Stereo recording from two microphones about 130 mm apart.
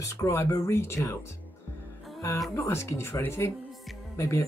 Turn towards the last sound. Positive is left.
turn(degrees=20)  # may be behind; listen again after turning